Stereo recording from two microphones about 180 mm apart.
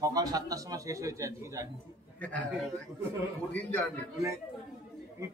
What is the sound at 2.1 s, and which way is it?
Speech, 10° left (ahead or behind).